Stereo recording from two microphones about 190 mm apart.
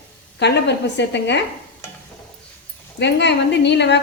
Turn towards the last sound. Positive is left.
turn(degrees=65)  # may be behind; listen again after turning